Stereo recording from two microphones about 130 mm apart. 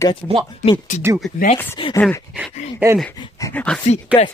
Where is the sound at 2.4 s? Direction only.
15° right (ahead or behind).